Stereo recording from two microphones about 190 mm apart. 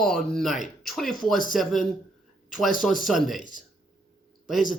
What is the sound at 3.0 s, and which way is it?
Speech, centre (ahead or behind).